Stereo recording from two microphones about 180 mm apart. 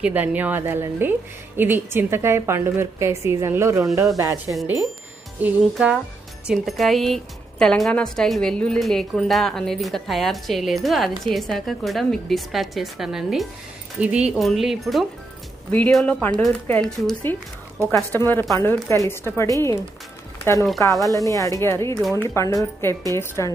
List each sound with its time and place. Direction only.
0.0 s a woman's voice: 10° right (ahead or behind)
5.4 s a woman's voice: 5° right (ahead or behind); by 23.5 s 15° left (ahead or behind)